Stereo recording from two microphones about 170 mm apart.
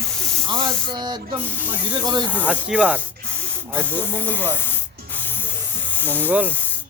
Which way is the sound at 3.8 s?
10° left (ahead or behind).